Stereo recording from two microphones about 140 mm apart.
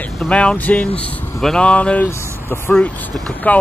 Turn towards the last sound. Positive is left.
turn(degrees=10)  # may be behind; listen again after turning